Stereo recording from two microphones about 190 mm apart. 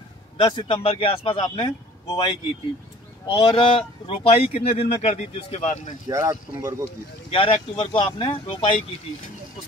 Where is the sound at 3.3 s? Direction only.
25° left (ahead or behind).